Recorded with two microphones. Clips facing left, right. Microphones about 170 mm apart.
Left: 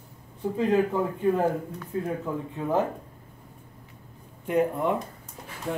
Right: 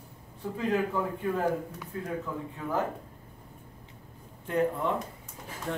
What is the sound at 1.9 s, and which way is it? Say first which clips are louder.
Speech: left 5 dB; 25° left (ahead or behind).